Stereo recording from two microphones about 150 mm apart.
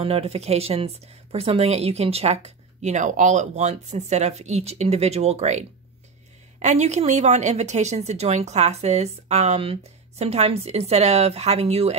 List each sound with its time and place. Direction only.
0.0 s a woman's voice: 40° right (ahead or behind)